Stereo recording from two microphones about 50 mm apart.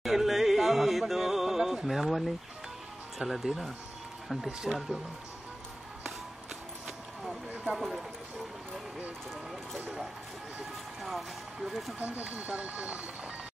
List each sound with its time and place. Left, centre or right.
0.0 s music: centre
3.2 s speech: centre
4.5 s speech: centre
7.7 s speech: centre
11.0 s speech: centre
12.0 s speech: right